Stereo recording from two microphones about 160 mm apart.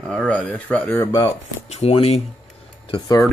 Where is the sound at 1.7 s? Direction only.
40° left (ahead or behind).